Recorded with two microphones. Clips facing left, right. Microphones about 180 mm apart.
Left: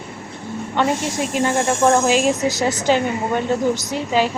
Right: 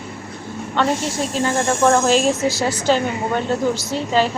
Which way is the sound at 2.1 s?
10° left (ahead or behind).